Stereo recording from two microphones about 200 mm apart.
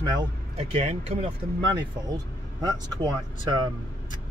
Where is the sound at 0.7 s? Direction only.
30° right (ahead or behind).